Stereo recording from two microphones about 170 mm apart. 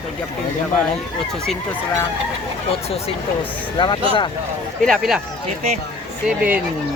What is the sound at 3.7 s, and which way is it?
Speech, 25° left (ahead or behind).